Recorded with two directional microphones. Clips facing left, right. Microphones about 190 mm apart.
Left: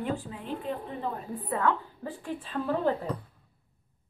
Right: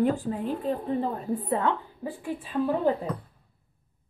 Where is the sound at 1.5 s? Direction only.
25° right (ahead or behind).